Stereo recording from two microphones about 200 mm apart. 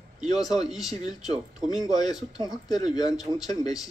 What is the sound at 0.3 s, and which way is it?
Speech, 20° left (ahead or behind).